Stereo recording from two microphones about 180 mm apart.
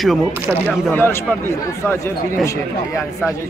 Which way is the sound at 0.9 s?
15° left (ahead or behind).